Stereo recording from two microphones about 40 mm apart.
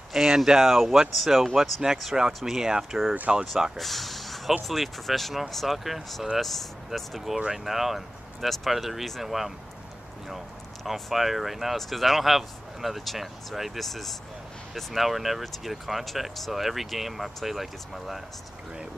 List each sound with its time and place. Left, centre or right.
0.1 s speech: centre
3.7 s a sound: centre
4.6 s speech: centre